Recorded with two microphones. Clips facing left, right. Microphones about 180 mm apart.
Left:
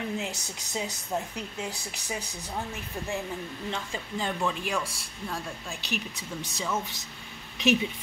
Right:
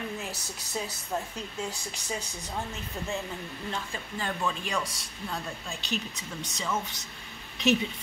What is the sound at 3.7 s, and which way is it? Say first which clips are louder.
Speech: left 2 dB; 20° left (ahead or behind).